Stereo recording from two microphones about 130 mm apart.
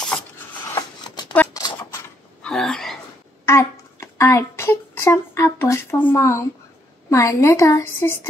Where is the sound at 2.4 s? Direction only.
5° left (ahead or behind).